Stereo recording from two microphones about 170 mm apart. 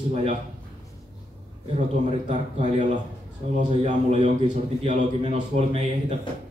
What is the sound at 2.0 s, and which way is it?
Speech, 45° right (ahead or behind).